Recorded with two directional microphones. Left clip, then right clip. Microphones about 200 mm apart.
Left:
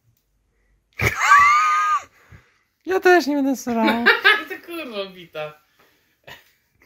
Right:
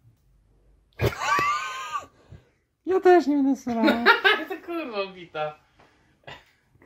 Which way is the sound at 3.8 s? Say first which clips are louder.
Left 3 dB; 55° right (ahead or behind).